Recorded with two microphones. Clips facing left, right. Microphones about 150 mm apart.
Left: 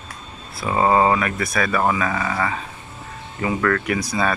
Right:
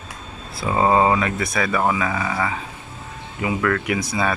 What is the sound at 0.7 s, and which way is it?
Speech, 15° right (ahead or behind).